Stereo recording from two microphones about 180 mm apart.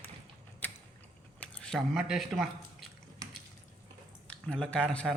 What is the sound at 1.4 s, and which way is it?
Speech, 5° left (ahead or behind).